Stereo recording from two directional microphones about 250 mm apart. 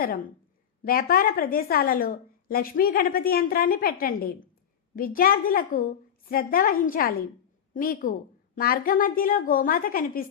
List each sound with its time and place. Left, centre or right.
0.9 s a woman's voice: left